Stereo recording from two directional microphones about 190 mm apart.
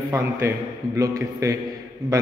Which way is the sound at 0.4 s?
15° right (ahead or behind).